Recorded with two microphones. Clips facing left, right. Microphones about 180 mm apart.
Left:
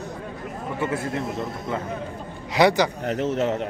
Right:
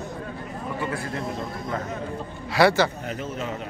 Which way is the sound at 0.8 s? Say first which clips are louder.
Left 5 dB; 20° left (ahead or behind).